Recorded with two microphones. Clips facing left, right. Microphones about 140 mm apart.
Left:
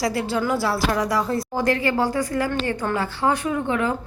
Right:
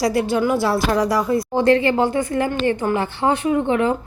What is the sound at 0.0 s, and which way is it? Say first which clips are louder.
A woman's voice: right 5 dB; 20° right (ahead or behind).